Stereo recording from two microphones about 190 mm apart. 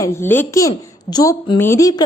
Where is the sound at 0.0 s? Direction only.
10° left (ahead or behind).